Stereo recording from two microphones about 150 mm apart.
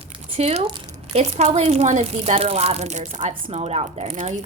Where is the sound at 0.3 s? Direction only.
45° right (ahead or behind).